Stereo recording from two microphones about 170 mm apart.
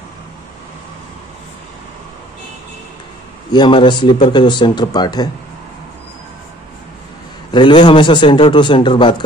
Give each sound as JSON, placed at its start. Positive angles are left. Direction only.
{"t": 3.5, "sound": "speech", "side_deg": 25}
{"t": 7.5, "sound": "speech", "side_deg": 25}